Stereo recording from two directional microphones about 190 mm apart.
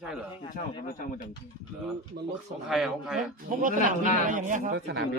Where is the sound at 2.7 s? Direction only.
Centre (ahead or behind).